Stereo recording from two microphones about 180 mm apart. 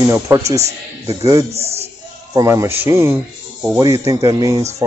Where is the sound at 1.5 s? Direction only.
35° right (ahead or behind).